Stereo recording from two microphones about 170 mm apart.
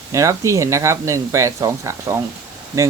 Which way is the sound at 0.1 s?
20° right (ahead or behind).